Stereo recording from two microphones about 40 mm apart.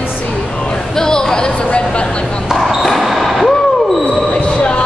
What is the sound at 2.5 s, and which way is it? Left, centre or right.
Basketball bounce, centre.